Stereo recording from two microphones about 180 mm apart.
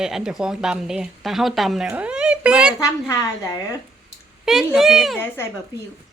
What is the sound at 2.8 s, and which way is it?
Speech, 20° left (ahead or behind).